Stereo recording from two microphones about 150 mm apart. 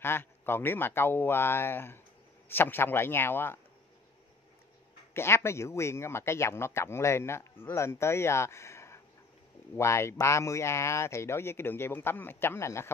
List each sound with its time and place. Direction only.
0.0 s speech: 15° left (ahead or behind)
5.1 s speech: 15° left (ahead or behind)